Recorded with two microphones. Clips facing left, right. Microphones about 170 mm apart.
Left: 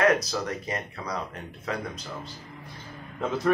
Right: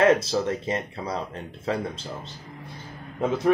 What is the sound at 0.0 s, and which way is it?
Speech, 25° right (ahead or behind).